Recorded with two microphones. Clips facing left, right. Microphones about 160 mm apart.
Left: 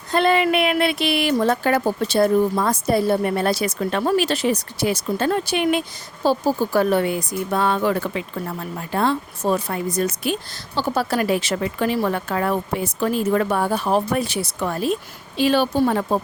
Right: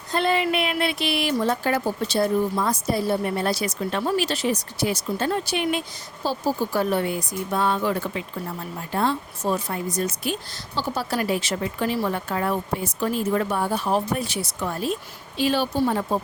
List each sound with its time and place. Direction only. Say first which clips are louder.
0.1 s a woman's voice: left 5 dB; 65° left (ahead or behind)
6.7 s a woman's voice: left 4 dB; 75° left (ahead or behind)